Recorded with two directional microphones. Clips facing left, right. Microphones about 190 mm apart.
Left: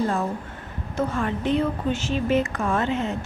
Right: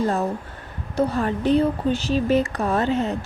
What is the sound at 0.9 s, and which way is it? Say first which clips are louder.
A woman's voice: right 4 dB; 35° right (ahead or behind).